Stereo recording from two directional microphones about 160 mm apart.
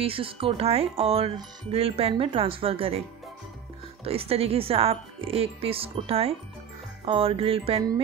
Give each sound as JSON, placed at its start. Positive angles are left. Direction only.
{"t": 0.0, "sound": "speech", "side_deg": -35}
{"t": 4.0, "sound": "speech", "side_deg": -35}